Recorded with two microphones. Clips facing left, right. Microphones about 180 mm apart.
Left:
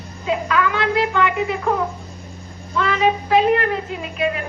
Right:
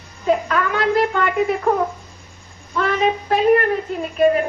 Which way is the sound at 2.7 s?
50° right (ahead or behind).